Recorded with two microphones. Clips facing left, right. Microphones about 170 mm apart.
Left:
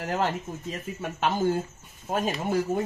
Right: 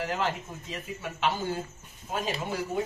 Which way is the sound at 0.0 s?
50° left (ahead or behind).